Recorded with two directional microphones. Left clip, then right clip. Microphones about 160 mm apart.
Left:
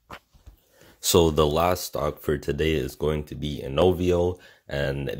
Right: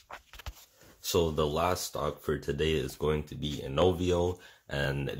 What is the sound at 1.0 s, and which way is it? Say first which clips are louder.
Speech: left 9 dB; 75° left (ahead or behind).